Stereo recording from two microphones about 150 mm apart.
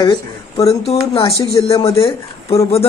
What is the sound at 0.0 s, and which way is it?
Speech, 20° left (ahead or behind).